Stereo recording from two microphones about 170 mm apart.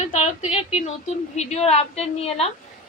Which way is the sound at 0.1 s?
40° left (ahead or behind).